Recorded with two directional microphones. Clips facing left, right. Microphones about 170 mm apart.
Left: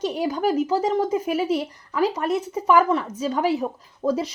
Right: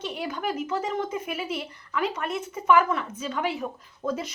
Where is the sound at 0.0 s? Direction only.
40° left (ahead or behind).